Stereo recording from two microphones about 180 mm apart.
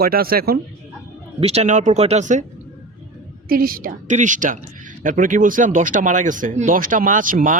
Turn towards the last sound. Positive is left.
turn(degrees=-50)  # may be behind; listen again after turning